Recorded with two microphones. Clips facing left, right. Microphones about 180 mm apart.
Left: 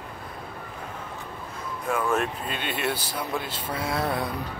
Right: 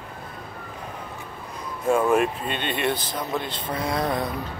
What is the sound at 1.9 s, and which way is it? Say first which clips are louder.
Speech: right 7 dB; 25° right (ahead or behind).